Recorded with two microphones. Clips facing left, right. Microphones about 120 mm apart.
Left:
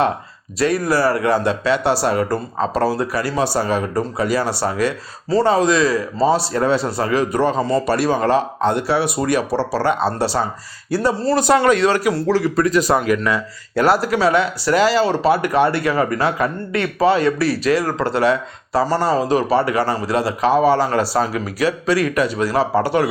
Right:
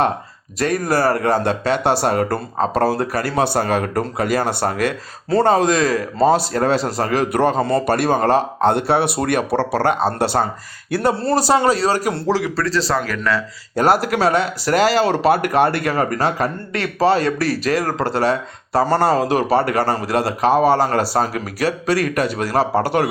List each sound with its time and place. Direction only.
0.6 s speech: 50° right (ahead or behind)
7.3 s speech: 60° right (ahead or behind)
11.3 s speech: 30° right (ahead or behind)
12.5 s speech: 15° left (ahead or behind)
13.7 s speech: 50° right (ahead or behind)
19.5 s speech: 45° right (ahead or behind)